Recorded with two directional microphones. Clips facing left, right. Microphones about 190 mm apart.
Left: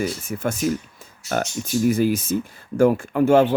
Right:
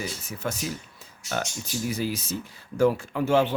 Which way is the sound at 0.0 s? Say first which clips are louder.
Left 8 dB; 50° left (ahead or behind).